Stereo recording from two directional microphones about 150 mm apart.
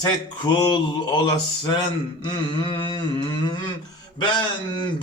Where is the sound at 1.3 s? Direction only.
30° left (ahead or behind).